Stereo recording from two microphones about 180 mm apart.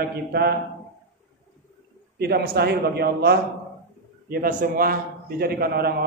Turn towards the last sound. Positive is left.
turn(degrees=-60)  # may be behind; listen again after turning